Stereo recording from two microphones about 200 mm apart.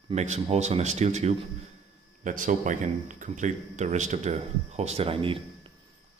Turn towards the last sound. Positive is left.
turn(degrees=-25)  # may be behind; listen again after turning